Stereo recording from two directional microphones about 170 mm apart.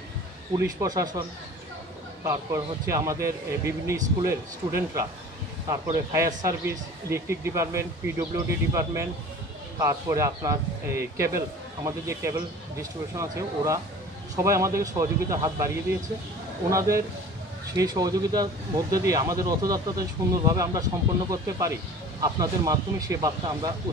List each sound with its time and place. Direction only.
0.6 s speech: 20° right (ahead or behind)
2.2 s speech: 20° right (ahead or behind)